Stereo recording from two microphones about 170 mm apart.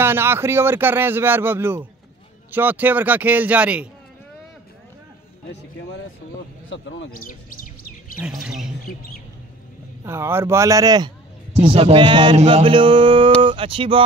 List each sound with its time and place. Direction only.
0.0 s speech: 15° right (ahead or behind)
6.7 s speech: 90° left; by 7.7 s 55° left (ahead or behind)
8.2 s speech: 5° right (ahead or behind)
10.0 s speech: 15° right (ahead or behind)
11.5 s mantra: 35° right (ahead or behind)
13.4 s a sound: 30° right (ahead or behind)